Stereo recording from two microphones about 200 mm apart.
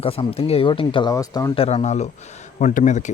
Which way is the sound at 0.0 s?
30° left (ahead or behind).